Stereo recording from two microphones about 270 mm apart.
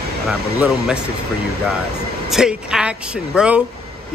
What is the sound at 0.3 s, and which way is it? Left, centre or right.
Speech, centre.